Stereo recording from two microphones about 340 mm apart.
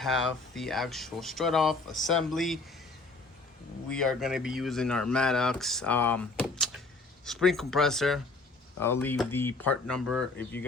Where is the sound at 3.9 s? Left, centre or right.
Centre.